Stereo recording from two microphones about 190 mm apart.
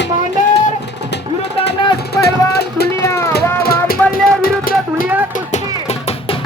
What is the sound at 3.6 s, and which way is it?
Music, 55° left (ahead or behind).